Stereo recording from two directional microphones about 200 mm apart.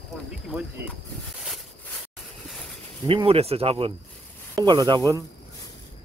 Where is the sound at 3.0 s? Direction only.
30° right (ahead or behind).